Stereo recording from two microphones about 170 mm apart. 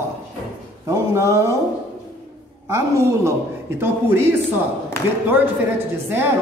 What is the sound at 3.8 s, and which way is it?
Speech, 15° right (ahead or behind).